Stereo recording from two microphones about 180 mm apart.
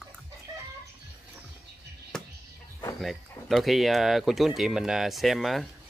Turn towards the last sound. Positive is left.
turn(degrees=0)  # may be behind; listen again after turning